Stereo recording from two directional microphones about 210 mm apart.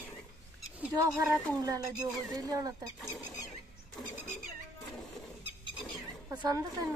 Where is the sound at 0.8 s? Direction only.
10° right (ahead or behind).